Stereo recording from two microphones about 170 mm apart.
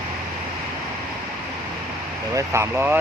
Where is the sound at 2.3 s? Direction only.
15° right (ahead or behind).